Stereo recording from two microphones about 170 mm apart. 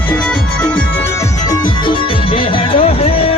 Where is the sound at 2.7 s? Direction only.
35° left (ahead or behind).